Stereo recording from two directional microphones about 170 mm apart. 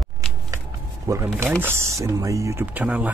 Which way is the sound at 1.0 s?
15° right (ahead or behind).